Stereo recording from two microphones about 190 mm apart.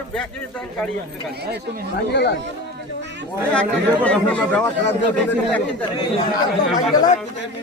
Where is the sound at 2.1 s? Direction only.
60° left (ahead or behind).